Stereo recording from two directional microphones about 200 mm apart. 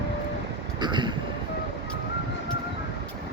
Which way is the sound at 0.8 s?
25° right (ahead or behind).